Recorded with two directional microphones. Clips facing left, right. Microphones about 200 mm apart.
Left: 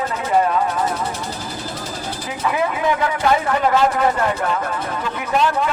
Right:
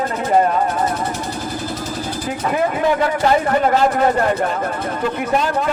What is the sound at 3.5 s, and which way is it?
Speech, 40° right (ahead or behind).